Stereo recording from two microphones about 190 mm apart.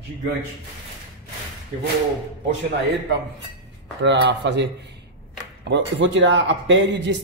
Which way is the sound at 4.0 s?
65° right (ahead or behind).